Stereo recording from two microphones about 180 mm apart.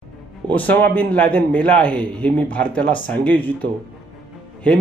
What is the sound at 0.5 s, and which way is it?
Speech, 10° left (ahead or behind).